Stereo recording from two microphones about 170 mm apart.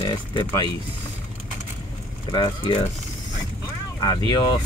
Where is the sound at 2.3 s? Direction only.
25° left (ahead or behind).